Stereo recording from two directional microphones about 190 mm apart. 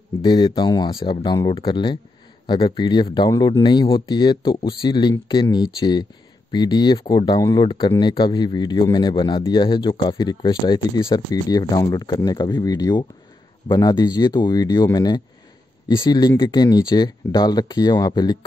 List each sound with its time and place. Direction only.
0.2 s speech: 25° left (ahead or behind)